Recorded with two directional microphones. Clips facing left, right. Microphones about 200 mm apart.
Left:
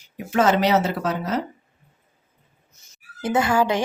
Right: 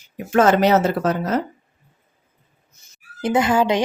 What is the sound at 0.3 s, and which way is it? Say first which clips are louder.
Speech: right 3 dB; 50° right (ahead or behind).